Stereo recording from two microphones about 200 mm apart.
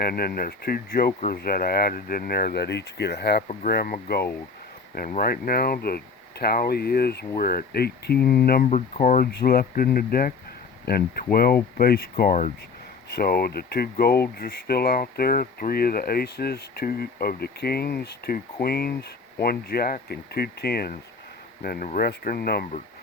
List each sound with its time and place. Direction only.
0.0 s speech: 50° left (ahead or behind)